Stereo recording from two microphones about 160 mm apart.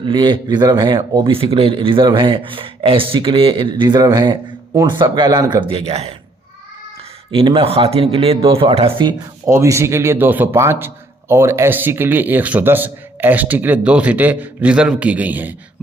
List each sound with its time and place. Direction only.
0.0 s a man's voice: 30° right (ahead or behind)
7.3 s a man's voice: 30° right (ahead or behind)
9.5 s speech: 15° right (ahead or behind)